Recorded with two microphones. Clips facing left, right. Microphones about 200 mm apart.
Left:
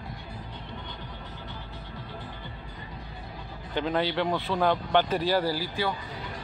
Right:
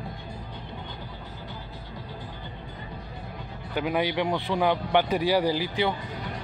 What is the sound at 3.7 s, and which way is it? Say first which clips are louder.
A man's voice: right 1 dB; 10° right (ahead or behind).